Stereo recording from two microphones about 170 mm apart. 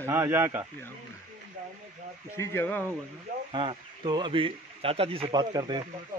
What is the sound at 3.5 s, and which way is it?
Speech, 25° right (ahead or behind).